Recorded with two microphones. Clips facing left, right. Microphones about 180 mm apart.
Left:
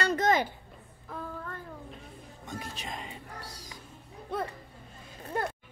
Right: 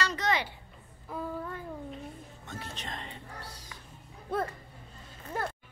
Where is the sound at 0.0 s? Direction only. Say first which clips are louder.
Left 5 dB; 50° left (ahead or behind).